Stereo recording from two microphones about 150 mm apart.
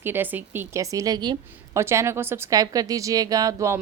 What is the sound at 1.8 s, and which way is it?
A woman's voice, 15° right (ahead or behind).